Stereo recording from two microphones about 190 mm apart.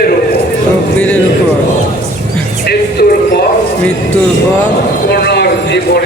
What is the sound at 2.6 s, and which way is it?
Music, 55° left (ahead or behind).